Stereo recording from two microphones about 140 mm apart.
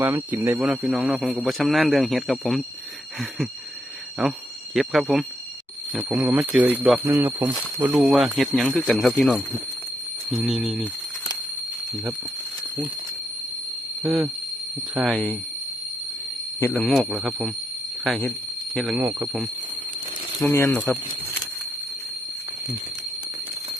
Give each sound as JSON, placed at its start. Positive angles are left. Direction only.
{"t": 0.0, "sound": "speech", "side_deg": -15}
{"t": 0.7, "sound": "speech", "side_deg": 0}
{"t": 4.2, "sound": "speech", "side_deg": 0}
{"t": 7.9, "sound": "speech", "side_deg": -5}
{"t": 14.0, "sound": "speech", "side_deg": 0}
{"t": 16.6, "sound": "speech", "side_deg": 15}
{"t": 16.8, "sound": "speech", "side_deg": 0}
{"t": 18.7, "sound": "speech", "side_deg": 5}
{"t": 18.9, "sound": "speech", "side_deg": -15}
{"t": 20.4, "sound": "speech", "side_deg": 20}